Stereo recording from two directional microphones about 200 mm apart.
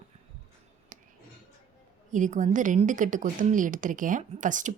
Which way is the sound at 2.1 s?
40° right (ahead or behind).